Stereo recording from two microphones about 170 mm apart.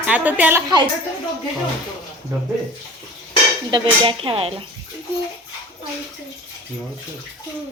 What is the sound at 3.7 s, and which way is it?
Speech, 30° right (ahead or behind).